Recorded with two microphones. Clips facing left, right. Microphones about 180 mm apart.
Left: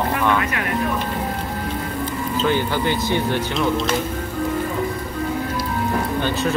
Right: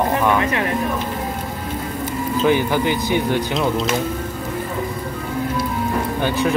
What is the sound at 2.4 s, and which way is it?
Speech, 15° right (ahead or behind).